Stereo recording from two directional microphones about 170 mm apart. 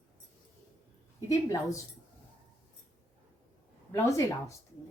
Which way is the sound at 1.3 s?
20° left (ahead or behind).